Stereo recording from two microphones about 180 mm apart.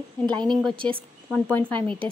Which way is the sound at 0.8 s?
30° right (ahead or behind).